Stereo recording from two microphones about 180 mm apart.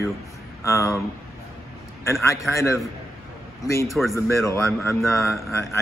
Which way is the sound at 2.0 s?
15° left (ahead or behind).